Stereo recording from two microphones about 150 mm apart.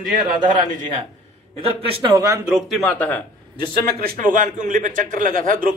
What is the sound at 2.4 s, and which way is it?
Speech, 5° right (ahead or behind).